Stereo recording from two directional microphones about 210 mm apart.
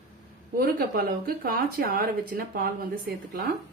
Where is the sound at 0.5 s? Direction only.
45° right (ahead or behind).